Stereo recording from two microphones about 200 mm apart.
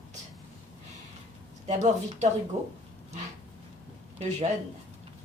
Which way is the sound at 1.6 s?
35° right (ahead or behind).